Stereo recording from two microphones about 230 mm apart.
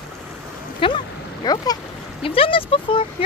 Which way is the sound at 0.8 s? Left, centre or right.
Left.